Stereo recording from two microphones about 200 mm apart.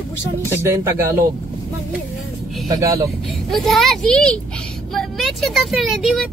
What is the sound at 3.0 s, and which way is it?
A child's voice, centre (ahead or behind).